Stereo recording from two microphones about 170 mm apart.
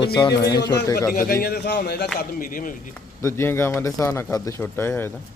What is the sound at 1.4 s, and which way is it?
Speech, 70° left (ahead or behind).